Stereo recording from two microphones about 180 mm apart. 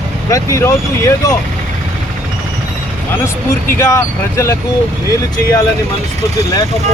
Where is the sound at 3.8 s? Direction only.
15° left (ahead or behind).